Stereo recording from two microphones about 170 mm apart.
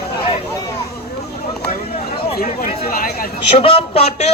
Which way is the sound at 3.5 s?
35° left (ahead or behind).